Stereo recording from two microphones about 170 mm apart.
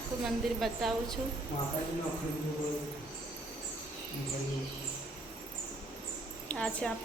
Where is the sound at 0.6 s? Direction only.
Centre (ahead or behind).